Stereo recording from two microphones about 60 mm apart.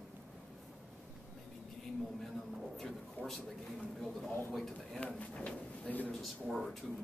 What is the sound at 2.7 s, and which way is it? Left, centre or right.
Speech, centre.